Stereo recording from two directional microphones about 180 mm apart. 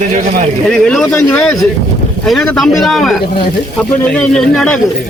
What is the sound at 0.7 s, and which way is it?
Speech, 5° left (ahead or behind).